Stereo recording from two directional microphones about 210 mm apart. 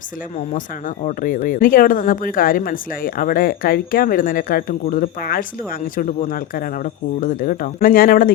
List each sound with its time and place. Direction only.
1.0 s speech: 40° left (ahead or behind)